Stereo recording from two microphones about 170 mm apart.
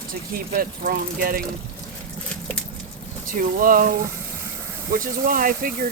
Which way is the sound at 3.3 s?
55° right (ahead or behind).